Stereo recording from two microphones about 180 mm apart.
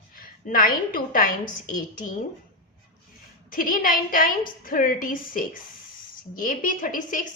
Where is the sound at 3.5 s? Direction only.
50° left (ahead or behind).